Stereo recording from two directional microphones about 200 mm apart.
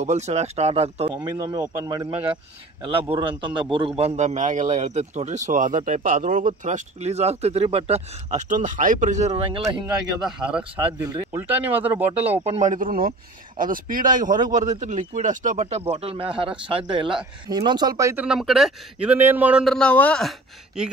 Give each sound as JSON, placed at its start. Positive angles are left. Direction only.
{"t": 0.0, "sound": "speech", "side_deg": -35}
{"t": 1.4, "sound": "speech", "side_deg": -20}
{"t": 10.2, "sound": "a man's voice", "side_deg": -5}
{"t": 12.4, "sound": "speech", "side_deg": -35}
{"t": 18.2, "sound": "a man's voice", "side_deg": 0}